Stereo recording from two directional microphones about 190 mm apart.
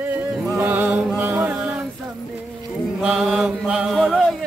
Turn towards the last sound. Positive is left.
turn(degrees=0)  # may be behind; listen again after turning